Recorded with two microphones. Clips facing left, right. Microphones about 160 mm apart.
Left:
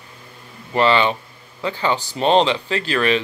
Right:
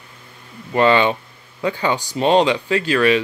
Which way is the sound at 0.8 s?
15° right (ahead or behind).